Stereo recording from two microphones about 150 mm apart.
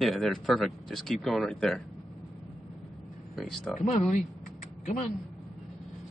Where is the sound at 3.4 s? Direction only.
Centre (ahead or behind).